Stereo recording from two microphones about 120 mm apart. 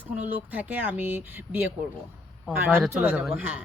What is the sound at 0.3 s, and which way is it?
Speech, 15° right (ahead or behind).